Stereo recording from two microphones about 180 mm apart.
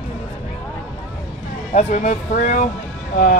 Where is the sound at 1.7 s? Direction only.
40° left (ahead or behind).